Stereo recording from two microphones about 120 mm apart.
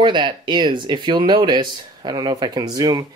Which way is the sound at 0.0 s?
40° right (ahead or behind).